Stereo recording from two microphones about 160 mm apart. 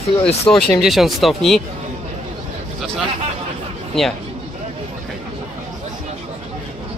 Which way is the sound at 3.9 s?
5° left (ahead or behind).